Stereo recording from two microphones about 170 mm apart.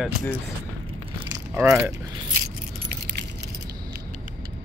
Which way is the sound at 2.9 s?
65° right (ahead or behind).